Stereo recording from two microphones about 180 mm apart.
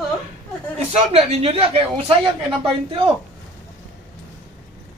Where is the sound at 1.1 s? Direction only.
35° right (ahead or behind).